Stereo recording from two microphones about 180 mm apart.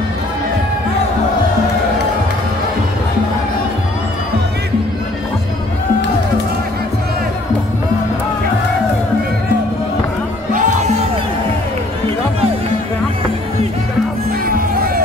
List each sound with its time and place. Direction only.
10.5 s music: 45° right (ahead or behind)